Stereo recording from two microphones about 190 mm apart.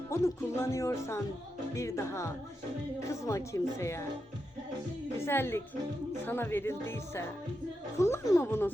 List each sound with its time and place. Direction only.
0.1 s speech: 15° left (ahead or behind)
5.2 s speech: 10° left (ahead or behind)